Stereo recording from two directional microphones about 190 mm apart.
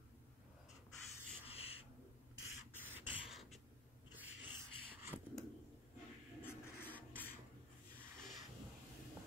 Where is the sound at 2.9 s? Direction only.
5° right (ahead or behind).